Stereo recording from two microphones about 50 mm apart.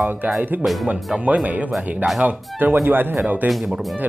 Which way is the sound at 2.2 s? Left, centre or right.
Right.